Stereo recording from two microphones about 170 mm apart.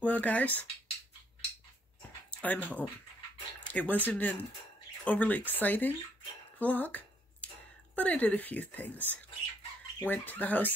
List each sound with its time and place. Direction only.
0.0 s speech: 10° left (ahead or behind)
2.3 s speech: 10° left (ahead or behind)